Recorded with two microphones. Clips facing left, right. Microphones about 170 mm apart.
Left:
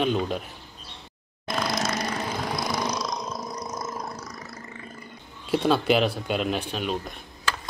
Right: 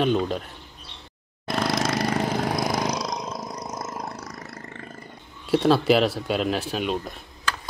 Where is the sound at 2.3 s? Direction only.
45° right (ahead or behind).